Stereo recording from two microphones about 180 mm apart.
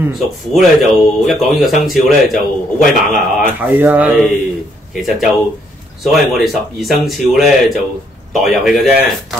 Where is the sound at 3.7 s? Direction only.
10° right (ahead or behind).